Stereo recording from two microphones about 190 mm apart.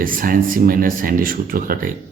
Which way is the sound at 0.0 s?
45° right (ahead or behind).